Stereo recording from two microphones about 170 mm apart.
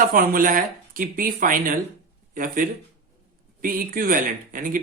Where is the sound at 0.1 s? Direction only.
55° right (ahead or behind).